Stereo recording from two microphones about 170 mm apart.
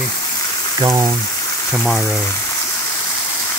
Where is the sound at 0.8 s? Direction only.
20° right (ahead or behind).